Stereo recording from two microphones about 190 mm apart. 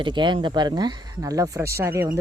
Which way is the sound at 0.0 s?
25° right (ahead or behind).